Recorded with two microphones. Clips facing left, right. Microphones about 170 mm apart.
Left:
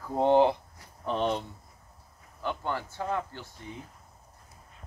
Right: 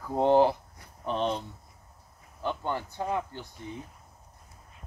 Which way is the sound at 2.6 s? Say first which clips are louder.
Right 1 dB; 15° right (ahead or behind).